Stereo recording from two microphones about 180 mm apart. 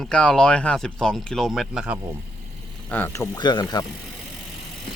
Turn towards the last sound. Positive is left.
turn(degrees=20)  # may be behind; listen again after turning